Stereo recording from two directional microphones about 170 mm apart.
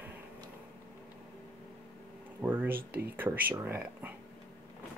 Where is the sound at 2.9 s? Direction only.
10° right (ahead or behind).